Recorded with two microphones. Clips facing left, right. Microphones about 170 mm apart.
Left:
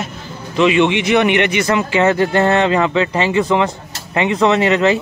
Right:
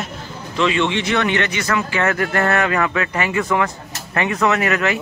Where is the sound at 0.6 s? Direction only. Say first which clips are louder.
Left 5 dB; 15° left (ahead or behind).